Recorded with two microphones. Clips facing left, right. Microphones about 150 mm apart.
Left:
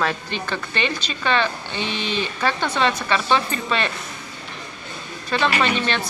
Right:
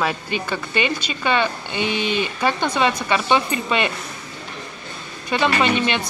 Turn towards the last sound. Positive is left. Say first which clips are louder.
# right 2 dB
turn(degrees=-15)  # may be behind; listen again after turning